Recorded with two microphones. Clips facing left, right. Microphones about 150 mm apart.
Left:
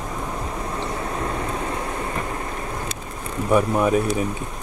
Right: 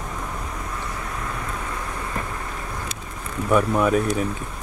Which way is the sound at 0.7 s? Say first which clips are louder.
Left 4 dB; 30° left (ahead or behind).